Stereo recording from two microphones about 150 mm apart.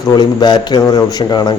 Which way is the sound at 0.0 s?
30° left (ahead or behind).